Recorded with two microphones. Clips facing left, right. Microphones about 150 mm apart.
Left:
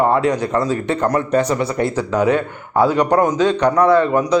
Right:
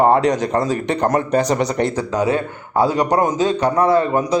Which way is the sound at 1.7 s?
30° right (ahead or behind).